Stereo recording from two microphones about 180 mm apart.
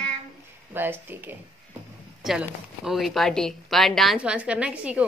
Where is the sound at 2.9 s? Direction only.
Centre (ahead or behind).